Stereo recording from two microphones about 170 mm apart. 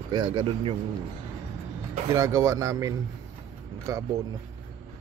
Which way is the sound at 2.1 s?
20° right (ahead or behind).